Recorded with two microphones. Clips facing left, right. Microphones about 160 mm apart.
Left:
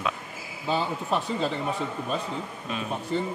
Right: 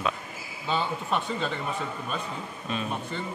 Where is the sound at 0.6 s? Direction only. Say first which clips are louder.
Left 2 dB; 35° left (ahead or behind).